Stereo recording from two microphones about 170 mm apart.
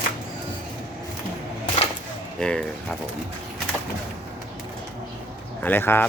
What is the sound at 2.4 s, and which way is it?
Speech, 5° left (ahead or behind).